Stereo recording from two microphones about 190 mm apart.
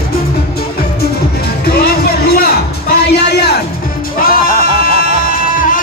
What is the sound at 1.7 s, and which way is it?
Music, 55° left (ahead or behind).